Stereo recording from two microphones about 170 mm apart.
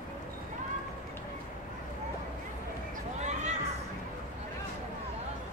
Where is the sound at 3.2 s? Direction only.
45° right (ahead or behind).